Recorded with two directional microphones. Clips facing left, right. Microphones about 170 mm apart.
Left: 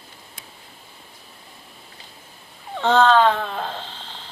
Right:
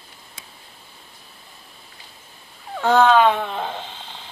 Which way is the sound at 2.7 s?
10° right (ahead or behind).